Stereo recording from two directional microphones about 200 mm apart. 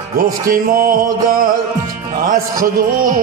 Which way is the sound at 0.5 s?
45° right (ahead or behind).